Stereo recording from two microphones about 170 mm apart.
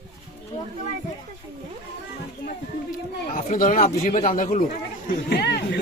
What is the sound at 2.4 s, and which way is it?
Speech, 55° left (ahead or behind).